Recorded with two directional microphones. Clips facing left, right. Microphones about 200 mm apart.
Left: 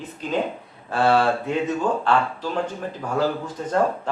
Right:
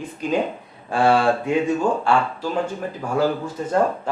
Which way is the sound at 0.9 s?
15° right (ahead or behind).